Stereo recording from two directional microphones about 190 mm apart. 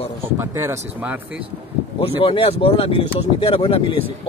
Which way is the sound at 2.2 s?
30° left (ahead or behind).